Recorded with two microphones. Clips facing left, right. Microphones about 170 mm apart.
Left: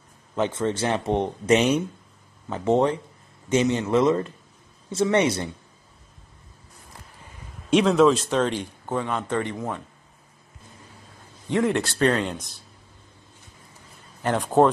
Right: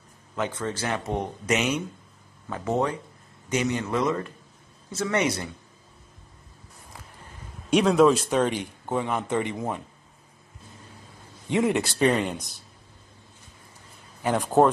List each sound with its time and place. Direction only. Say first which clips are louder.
0.4 s speech: left 5 dB; 25° left (ahead or behind)
7.7 s a man's voice: left 1 dB; 5° right (ahead or behind)
11.4 s a man's voice: left 1 dB; 15° right (ahead or behind)
14.2 s speech: left 1 dB; 5° right (ahead or behind)